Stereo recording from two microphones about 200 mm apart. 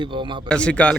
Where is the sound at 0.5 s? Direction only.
5° left (ahead or behind).